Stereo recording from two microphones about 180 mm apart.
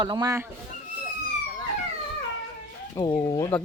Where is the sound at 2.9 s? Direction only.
20° left (ahead or behind).